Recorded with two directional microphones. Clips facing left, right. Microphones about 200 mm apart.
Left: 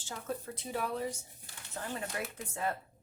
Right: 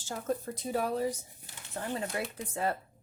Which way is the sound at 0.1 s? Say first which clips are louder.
Right 6 dB; 40° right (ahead or behind).